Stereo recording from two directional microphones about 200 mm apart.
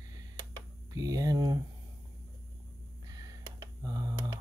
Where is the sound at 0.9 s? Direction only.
20° right (ahead or behind).